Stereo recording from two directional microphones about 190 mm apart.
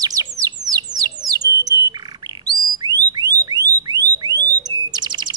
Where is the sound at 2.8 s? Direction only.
20° right (ahead or behind).